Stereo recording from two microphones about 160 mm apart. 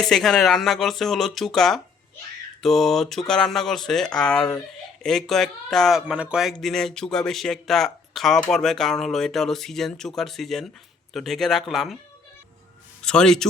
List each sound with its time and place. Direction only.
0.0 s speech: centre (ahead or behind)
13.0 s speech: 5° left (ahead or behind)